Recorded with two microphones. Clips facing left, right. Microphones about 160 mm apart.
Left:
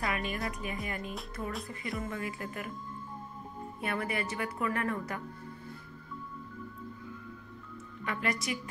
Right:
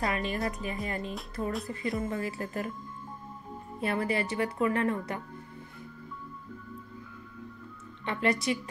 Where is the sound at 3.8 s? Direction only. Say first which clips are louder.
Right 5 dB; 30° right (ahead or behind).